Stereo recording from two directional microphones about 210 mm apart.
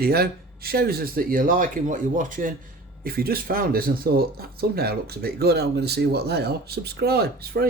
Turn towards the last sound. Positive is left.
turn(degrees=-50)  # may be behind; listen again after turning